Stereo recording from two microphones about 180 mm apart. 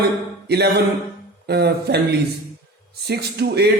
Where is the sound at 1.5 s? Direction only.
65° right (ahead or behind).